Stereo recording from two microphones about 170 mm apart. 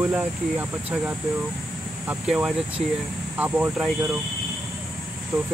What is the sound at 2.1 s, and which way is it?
Speech, 5° right (ahead or behind).